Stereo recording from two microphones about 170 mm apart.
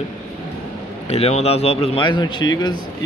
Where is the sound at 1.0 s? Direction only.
35° left (ahead or behind).